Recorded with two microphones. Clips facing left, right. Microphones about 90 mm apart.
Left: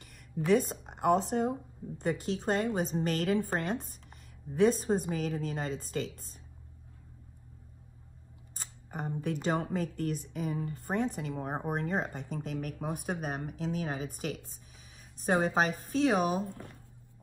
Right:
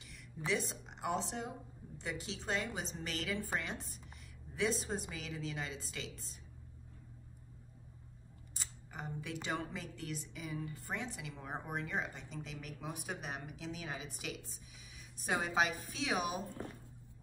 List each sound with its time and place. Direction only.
0.5 s speech: 45° left (ahead or behind)
8.5 s speech: 45° left (ahead or behind)